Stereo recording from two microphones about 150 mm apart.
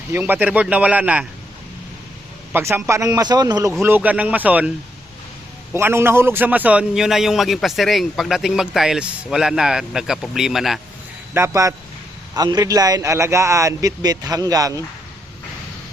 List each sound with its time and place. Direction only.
0.1 s a man's voice: 10° right (ahead or behind)
2.5 s a man's voice: 15° right (ahead or behind)
3.8 s a man's voice: 10° right (ahead or behind)
5.7 s a man's voice: 15° right (ahead or behind)
11.3 s a man's voice: 20° right (ahead or behind)